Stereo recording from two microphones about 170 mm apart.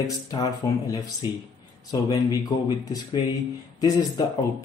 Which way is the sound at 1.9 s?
20° left (ahead or behind).